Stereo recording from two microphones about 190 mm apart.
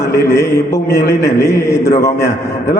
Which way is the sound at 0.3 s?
15° left (ahead or behind).